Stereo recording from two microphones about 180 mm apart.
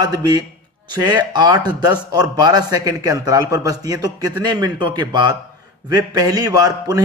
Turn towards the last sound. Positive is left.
turn(degrees=-20)  # may be behind; listen again after turning